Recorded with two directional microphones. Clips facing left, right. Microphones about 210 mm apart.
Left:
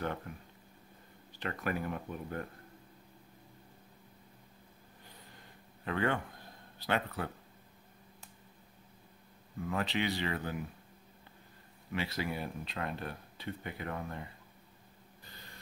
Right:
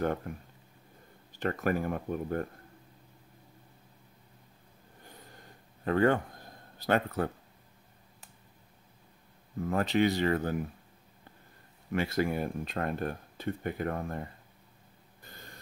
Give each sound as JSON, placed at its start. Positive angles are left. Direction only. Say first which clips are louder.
{"t": 0.3, "sound": "speech", "louder": "right 6 dB", "side_deg": -45}
{"t": 5.9, "sound": "speech", "louder": "right 7 dB", "side_deg": -40}
{"t": 9.6, "sound": "speech", "louder": "right 7 dB", "side_deg": -45}
{"t": 11.9, "sound": "speech", "louder": "right 7 dB", "side_deg": -50}
{"t": 15.2, "sound": "a sound", "louder": "right 5 dB", "side_deg": -50}